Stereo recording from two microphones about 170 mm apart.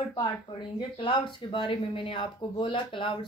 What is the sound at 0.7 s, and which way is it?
Speech, 30° left (ahead or behind).